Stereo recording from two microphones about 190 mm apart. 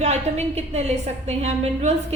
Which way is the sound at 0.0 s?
35° right (ahead or behind).